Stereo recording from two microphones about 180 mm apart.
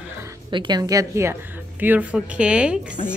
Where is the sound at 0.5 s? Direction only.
25° right (ahead or behind).